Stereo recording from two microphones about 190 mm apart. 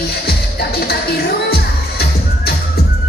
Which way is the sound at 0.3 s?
55° left (ahead or behind).